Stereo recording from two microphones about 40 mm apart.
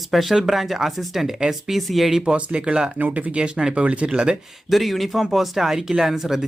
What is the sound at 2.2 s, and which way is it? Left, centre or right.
Speech, right.